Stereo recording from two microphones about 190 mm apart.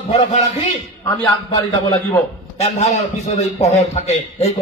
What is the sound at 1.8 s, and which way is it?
Speech, 15° left (ahead or behind).